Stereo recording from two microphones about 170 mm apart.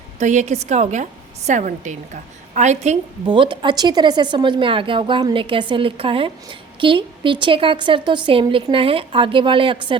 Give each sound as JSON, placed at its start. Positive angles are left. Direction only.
{"t": 0.2, "sound": "a woman's voice", "side_deg": -45}
{"t": 3.2, "sound": "speech", "side_deg": -30}